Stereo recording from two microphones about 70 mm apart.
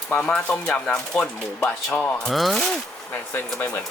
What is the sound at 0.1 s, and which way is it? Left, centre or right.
Speech, centre.